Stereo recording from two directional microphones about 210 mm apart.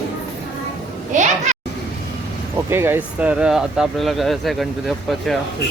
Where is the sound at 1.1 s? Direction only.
35° right (ahead or behind).